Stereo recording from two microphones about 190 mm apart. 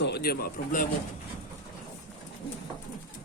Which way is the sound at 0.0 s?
55° left (ahead or behind).